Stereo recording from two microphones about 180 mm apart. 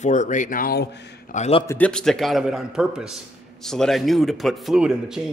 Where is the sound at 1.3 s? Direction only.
35° left (ahead or behind).